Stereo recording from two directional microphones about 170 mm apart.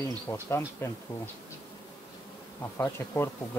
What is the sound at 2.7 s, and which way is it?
Speech, 15° left (ahead or behind).